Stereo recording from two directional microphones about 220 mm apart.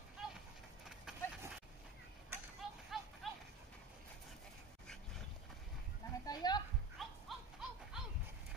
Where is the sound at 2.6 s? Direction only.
Centre (ahead or behind).